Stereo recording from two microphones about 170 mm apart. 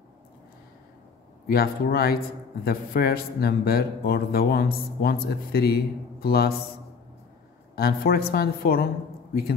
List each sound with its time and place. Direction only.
1.5 s a man's voice: 65° left (ahead or behind)
7.7 s a man's voice: 65° left (ahead or behind)